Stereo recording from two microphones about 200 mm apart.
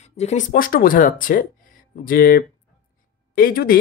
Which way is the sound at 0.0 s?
35° left (ahead or behind).